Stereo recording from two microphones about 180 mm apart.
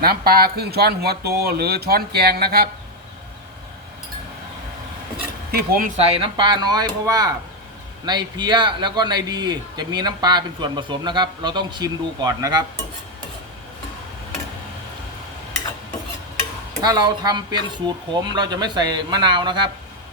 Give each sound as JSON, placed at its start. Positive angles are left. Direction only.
{"t": 0.0, "sound": "speech", "side_deg": -55}
{"t": 5.5, "sound": "speech", "side_deg": -50}
{"t": 6.0, "sound": "a man's voice", "side_deg": -30}
{"t": 16.8, "sound": "a man's voice", "side_deg": -20}